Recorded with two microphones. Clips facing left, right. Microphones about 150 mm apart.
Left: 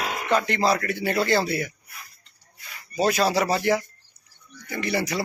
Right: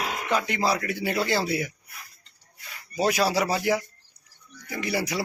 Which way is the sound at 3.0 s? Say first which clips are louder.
Left 2 dB; 5° right (ahead or behind).